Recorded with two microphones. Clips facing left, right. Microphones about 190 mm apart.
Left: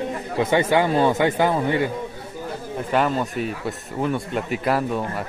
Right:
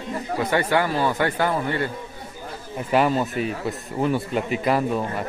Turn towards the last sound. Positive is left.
turn(degrees=0)  # may be behind; listen again after turning